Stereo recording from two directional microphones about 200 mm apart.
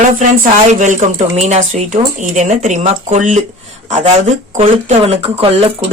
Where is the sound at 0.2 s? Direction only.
40° right (ahead or behind).